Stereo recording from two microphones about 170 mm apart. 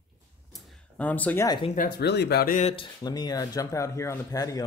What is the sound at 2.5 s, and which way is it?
Speech, 40° left (ahead or behind).